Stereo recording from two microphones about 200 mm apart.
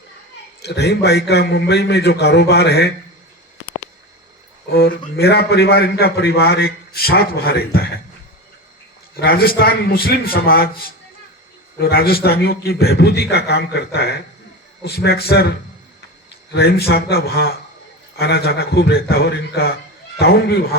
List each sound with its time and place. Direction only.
0.6 s a man's voice: 55° left (ahead or behind)
4.7 s a man's voice: 50° left (ahead or behind)
9.1 s a man's voice: 50° left (ahead or behind)
16.6 s a man's voice: 55° left (ahead or behind)